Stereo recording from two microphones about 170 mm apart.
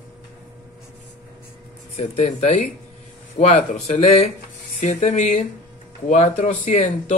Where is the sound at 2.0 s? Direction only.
45° left (ahead or behind).